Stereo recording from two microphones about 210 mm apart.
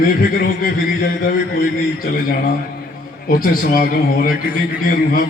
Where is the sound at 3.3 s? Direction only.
45° left (ahead or behind).